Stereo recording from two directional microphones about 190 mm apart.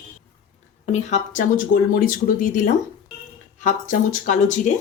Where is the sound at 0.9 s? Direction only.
40° left (ahead or behind).